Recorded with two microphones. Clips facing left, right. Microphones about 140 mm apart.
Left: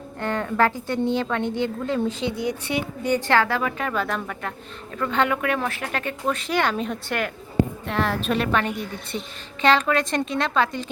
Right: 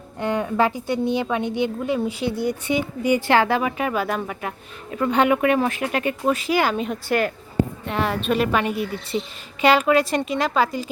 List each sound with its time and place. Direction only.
0.2 s speech: 15° right (ahead or behind)
2.2 s speech: 15° left (ahead or behind)
2.5 s a woman's voice: 10° right (ahead or behind)